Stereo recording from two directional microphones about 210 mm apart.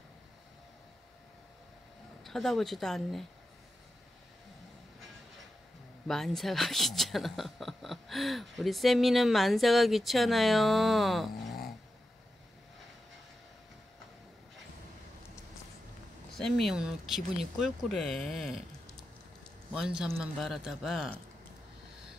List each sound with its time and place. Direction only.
2.2 s speech: centre (ahead or behind)
6.0 s speech: centre (ahead or behind)
16.3 s speech: centre (ahead or behind)